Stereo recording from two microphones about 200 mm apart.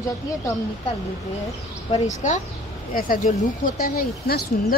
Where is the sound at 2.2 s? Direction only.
35° left (ahead or behind).